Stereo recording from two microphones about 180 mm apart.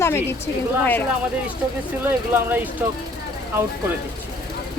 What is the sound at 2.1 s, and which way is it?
Speech, 10° right (ahead or behind).